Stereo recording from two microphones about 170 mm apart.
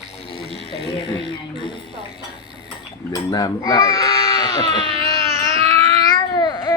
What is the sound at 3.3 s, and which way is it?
Speech, 20° left (ahead or behind).